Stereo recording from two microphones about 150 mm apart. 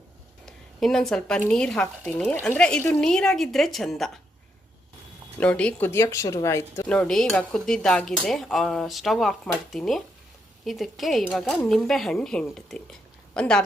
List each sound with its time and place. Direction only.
0.4 s a sound: centre (ahead or behind)
1.5 s dishes: 5° left (ahead or behind)
5.4 s speech: 10° left (ahead or behind)
6.8 s dishes: 5° left (ahead or behind)
13.3 s speech: 5° left (ahead or behind)